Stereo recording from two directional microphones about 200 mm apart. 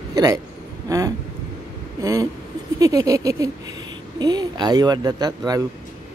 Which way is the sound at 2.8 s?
15° right (ahead or behind).